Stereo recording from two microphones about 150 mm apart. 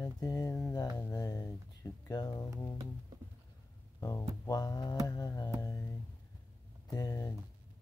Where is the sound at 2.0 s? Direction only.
25° left (ahead or behind).